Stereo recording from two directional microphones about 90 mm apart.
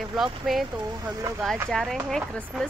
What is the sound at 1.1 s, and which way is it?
Speech, 40° right (ahead or behind).